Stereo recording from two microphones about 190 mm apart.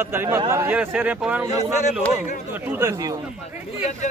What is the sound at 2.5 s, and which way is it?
Speech, 10° right (ahead or behind).